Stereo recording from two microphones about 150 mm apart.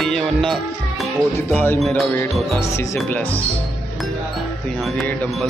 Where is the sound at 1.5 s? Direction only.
10° left (ahead or behind).